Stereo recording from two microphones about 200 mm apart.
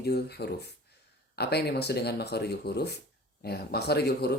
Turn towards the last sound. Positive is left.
turn(degrees=55)  # may be behind; listen again after turning